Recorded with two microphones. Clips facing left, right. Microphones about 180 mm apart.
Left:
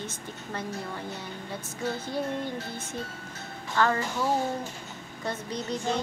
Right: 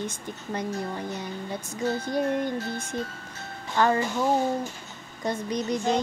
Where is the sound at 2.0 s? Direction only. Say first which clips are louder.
Right 5 dB; 15° right (ahead or behind).